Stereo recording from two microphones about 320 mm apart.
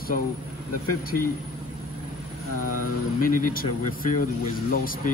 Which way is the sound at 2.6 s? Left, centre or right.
Left.